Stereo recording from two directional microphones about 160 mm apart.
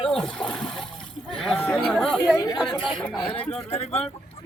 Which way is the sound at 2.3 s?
20° left (ahead or behind).